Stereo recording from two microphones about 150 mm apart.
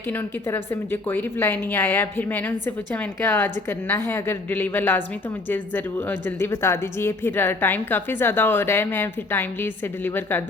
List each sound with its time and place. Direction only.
0.1 s a woman's voice: 15° left (ahead or behind)